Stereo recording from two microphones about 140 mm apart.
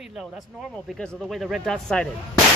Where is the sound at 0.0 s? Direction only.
5° right (ahead or behind).